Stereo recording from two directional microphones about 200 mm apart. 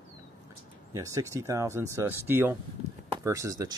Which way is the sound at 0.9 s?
15° right (ahead or behind).